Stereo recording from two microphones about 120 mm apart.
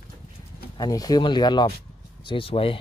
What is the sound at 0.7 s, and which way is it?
Speech, 35° left (ahead or behind).